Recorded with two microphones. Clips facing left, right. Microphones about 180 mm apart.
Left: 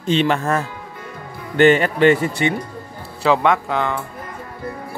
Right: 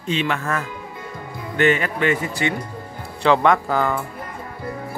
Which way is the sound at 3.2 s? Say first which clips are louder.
Even; centre (ahead or behind).